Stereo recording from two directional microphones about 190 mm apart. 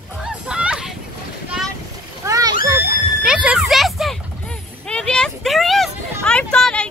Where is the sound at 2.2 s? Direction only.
15° right (ahead or behind).